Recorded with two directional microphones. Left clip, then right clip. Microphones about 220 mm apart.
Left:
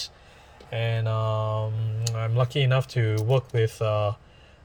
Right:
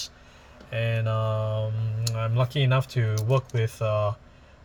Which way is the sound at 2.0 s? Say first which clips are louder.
Left 1 dB; 15° left (ahead or behind).